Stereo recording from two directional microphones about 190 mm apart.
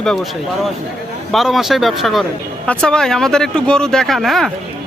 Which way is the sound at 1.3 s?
Centre (ahead or behind).